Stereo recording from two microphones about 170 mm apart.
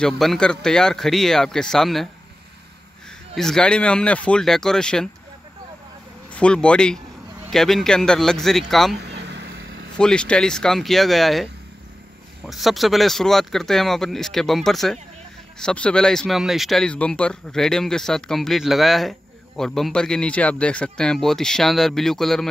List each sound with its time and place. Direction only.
0.0 s speech: 5° left (ahead or behind)
3.3 s speech: 5° left (ahead or behind)
6.3 s speech: 5° left (ahead or behind)
9.0 s vehicle: 85° right
9.9 s speech: 5° left (ahead or behind)
12.4 s speech: centre (ahead or behind)